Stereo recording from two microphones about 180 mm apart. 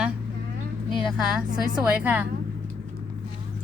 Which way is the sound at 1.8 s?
10° right (ahead or behind).